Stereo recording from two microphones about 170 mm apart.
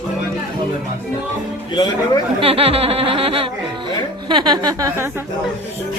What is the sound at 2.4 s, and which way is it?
Speech, 35° right (ahead or behind).